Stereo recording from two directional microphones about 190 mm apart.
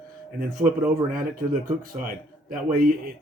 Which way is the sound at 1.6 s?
50° right (ahead or behind).